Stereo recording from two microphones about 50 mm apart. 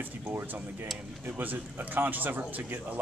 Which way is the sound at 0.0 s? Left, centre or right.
Right.